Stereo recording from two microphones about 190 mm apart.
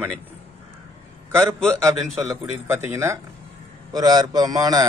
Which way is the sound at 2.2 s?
15° right (ahead or behind).